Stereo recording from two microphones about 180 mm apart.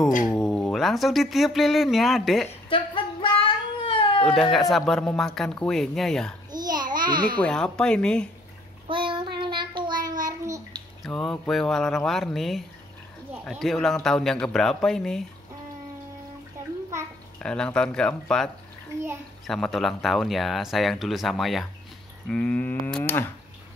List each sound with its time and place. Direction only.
0.4 s speech: centre (ahead or behind)
2.7 s cat: 30° left (ahead or behind)
4.4 s speech: centre (ahead or behind)
6.5 s babbling: 20° right (ahead or behind)
7.3 s speech: 5° left (ahead or behind)
8.8 s child singing: 30° right (ahead or behind)
11.1 s speech: 5° left (ahead or behind)
17.4 s speech: 5° left (ahead or behind)
22.3 s a sound: 5° left (ahead or behind)